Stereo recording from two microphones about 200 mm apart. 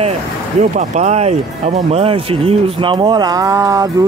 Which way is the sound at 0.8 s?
35° right (ahead or behind).